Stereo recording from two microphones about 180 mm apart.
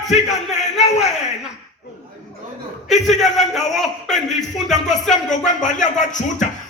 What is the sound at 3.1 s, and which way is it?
Speech, centre (ahead or behind).